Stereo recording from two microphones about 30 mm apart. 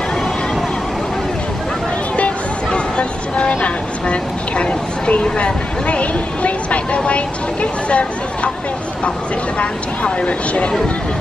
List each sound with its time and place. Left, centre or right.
2.1 s music: left
5.2 s speech: left
9.6 s speech: left